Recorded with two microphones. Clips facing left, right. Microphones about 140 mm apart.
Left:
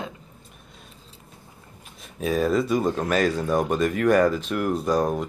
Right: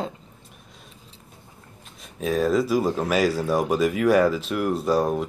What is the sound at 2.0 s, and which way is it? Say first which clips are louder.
Speech: even; centre (ahead or behind).